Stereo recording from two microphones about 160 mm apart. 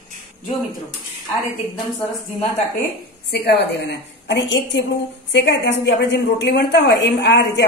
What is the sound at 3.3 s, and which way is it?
A woman's voice, 90° left.